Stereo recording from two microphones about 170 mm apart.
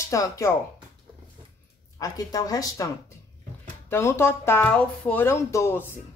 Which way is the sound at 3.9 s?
15° left (ahead or behind).